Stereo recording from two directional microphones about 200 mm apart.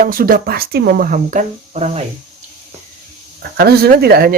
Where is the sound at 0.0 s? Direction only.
45° right (ahead or behind).